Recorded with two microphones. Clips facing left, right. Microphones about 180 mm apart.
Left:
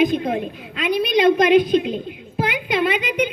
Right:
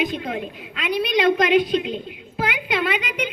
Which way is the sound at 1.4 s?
45° left (ahead or behind).